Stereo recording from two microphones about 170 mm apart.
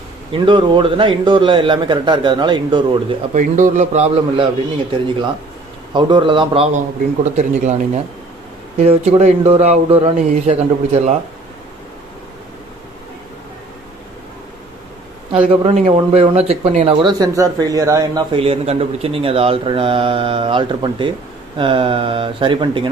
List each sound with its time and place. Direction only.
0.3 s a man's voice: 30° right (ahead or behind)
3.3 s a man's voice: 50° right (ahead or behind)
5.9 s a man's voice: 25° right (ahead or behind)
7.3 s a man's voice: 45° right (ahead or behind)
15.3 s speech: 35° right (ahead or behind)
18.3 s speech: 35° right (ahead or behind)